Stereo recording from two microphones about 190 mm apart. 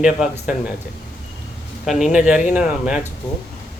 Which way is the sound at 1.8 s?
Centre (ahead or behind).